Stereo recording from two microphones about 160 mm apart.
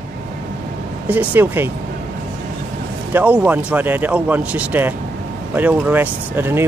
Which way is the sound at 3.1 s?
10° right (ahead or behind).